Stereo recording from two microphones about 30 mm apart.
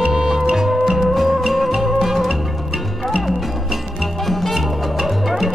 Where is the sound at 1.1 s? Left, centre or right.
Centre.